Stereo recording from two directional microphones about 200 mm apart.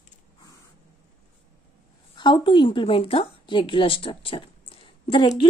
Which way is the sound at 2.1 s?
25° left (ahead or behind).